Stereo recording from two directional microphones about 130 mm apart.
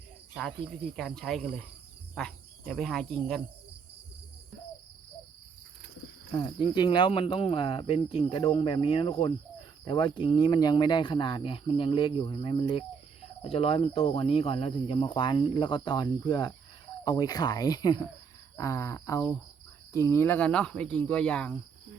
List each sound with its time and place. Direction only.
0.9 s speech: 5° left (ahead or behind)
6.3 s speech: 35° left (ahead or behind); by 21.5 s 10° left (ahead or behind)